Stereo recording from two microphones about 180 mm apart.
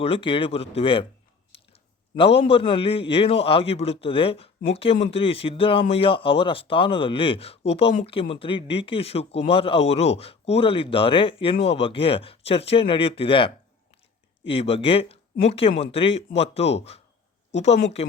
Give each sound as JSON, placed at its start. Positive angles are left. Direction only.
{"t": 0.0, "sound": "a man's voice", "side_deg": 30}
{"t": 1.5, "sound": "chewing", "side_deg": 30}
{"t": 2.1, "sound": "a man's voice", "side_deg": 30}